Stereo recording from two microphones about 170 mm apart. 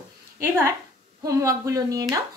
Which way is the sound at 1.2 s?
20° right (ahead or behind).